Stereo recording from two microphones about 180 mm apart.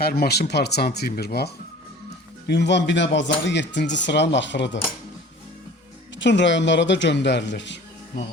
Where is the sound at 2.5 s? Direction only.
75° left (ahead or behind); by 3.2 s 90° left.